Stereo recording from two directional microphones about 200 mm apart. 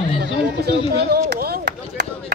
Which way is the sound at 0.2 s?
50° right (ahead or behind).